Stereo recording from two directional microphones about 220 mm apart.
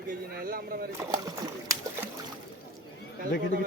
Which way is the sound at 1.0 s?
15° right (ahead or behind).